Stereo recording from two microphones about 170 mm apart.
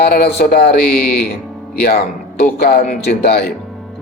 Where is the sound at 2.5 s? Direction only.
60° left (ahead or behind).